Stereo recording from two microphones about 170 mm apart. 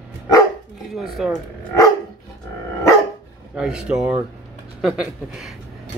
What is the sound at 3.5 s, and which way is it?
Speech, 5° right (ahead or behind).